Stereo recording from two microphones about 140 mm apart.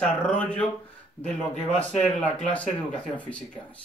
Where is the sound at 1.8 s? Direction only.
10° left (ahead or behind).